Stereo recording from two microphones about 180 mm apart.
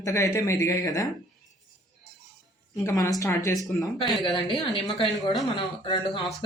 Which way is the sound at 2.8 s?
20° left (ahead or behind).